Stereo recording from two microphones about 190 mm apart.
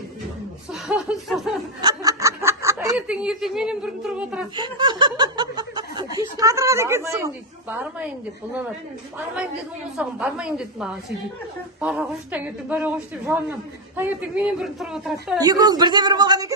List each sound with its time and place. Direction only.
0.7 s speech: 5° right (ahead or behind)
1.8 s snicker: 20° right (ahead or behind)
2.9 s speech: 5° right (ahead or behind)
4.5 s a woman's voice: 20° right (ahead or behind); by 8.1 s 5° right (ahead or behind)
10.0 s a woman's voice: 5° right (ahead or behind)
15.4 s a woman's voice: 20° right (ahead or behind)